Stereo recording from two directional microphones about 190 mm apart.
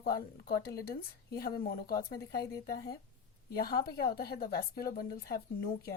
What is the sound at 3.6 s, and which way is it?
A woman's voice, 55° left (ahead or behind).